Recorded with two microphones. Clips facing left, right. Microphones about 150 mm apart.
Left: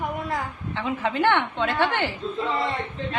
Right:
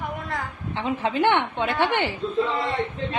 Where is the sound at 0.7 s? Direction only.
20° right (ahead or behind).